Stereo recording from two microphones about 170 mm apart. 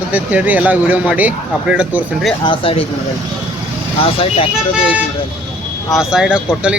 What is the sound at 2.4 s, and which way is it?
Speech, 30° left (ahead or behind).